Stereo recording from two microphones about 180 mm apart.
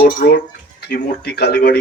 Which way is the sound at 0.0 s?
60° left (ahead or behind).